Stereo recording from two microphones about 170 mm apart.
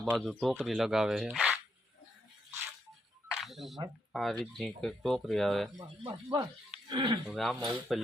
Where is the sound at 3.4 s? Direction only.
Centre (ahead or behind).